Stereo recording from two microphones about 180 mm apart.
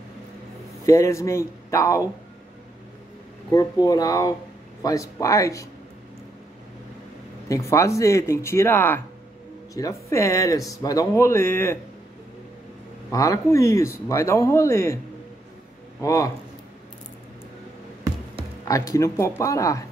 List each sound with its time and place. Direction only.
0.8 s speech: 15° left (ahead or behind)
3.5 s speech: 20° left (ahead or behind)
7.4 s speech: 15° left (ahead or behind)
13.1 s speech: 20° left (ahead or behind)
16.0 s speech: 15° left (ahead or behind)
18.7 s speech: 20° left (ahead or behind)